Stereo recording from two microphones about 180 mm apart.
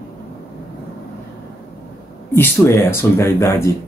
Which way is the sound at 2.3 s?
15° left (ahead or behind).